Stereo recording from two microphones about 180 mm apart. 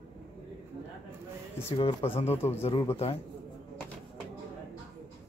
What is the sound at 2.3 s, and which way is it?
Speech, 15° left (ahead or behind).